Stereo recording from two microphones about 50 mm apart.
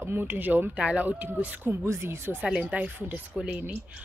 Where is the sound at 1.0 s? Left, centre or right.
Right.